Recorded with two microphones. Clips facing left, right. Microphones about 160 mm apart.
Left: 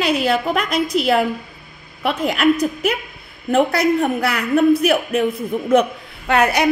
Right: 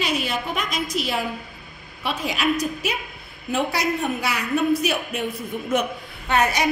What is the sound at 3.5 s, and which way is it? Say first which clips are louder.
A woman's voice: left 8 dB; 75° left (ahead or behind).